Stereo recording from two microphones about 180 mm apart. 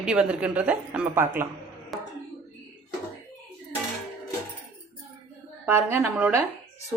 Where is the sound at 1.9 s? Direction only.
Centre (ahead or behind).